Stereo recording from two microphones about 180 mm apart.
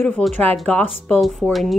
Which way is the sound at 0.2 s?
5° left (ahead or behind).